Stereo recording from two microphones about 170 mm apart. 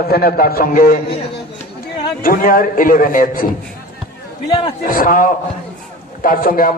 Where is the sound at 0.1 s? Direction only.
60° left (ahead or behind).